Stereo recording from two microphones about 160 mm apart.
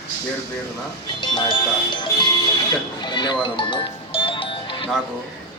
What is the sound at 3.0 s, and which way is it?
Music, 30° left (ahead or behind).